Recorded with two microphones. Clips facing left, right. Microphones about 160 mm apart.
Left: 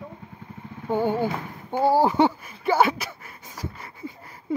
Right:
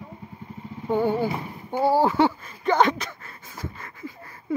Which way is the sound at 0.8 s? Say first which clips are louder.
Right 1 dB; 15° left (ahead or behind).